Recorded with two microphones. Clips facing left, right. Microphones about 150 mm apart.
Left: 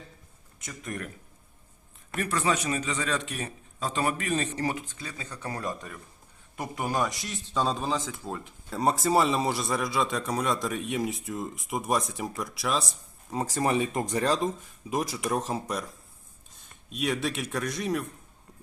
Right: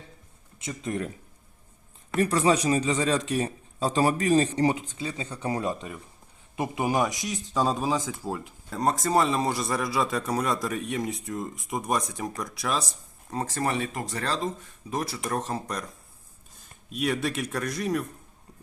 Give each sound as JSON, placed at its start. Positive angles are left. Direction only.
{"t": 0.9, "sound": "speech", "side_deg": -25}
{"t": 2.1, "sound": "speech", "side_deg": -30}
{"t": 5.4, "sound": "speech", "side_deg": -10}
{"t": 8.8, "sound": "a man's voice", "side_deg": 5}
{"t": 13.3, "sound": "speech", "side_deg": 10}
{"t": 16.9, "sound": "a man's voice", "side_deg": 0}